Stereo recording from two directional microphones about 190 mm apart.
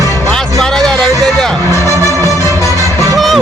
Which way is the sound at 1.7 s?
15° left (ahead or behind).